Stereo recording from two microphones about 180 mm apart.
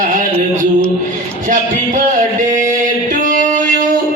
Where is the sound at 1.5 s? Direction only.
50° right (ahead or behind).